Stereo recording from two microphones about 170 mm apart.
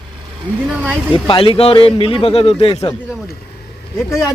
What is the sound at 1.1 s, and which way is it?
A man's voice, 30° left (ahead or behind).